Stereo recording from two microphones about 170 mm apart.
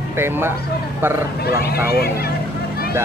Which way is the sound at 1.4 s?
65° left (ahead or behind).